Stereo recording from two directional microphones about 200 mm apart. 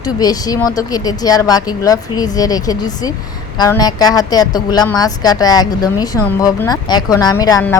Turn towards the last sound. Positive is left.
turn(degrees=20)  # may be behind; listen again after turning